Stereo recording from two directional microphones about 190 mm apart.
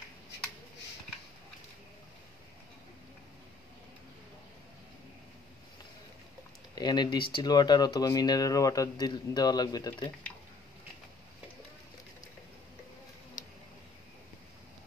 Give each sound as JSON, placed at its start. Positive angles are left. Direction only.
{"t": 6.7, "sound": "speech", "side_deg": 20}